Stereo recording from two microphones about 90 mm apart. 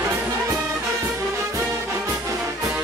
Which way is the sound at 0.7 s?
35° right (ahead or behind).